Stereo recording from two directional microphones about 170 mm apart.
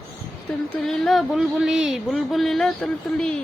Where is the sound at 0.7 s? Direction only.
Centre (ahead or behind).